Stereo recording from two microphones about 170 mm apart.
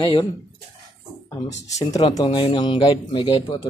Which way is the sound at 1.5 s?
40° left (ahead or behind).